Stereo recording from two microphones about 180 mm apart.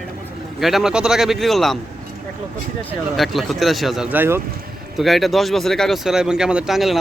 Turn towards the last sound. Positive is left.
turn(degrees=0)  # may be behind; listen again after turning